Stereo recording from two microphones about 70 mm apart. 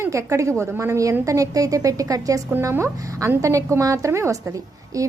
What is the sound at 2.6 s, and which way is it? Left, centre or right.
A woman's voice, right.